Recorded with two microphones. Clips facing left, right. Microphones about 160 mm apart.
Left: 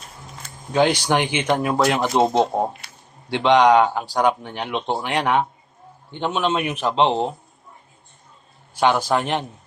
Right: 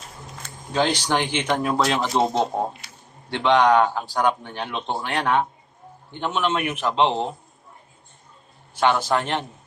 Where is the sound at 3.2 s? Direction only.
15° left (ahead or behind).